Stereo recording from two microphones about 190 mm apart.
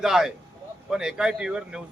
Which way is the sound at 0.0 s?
Centre (ahead or behind).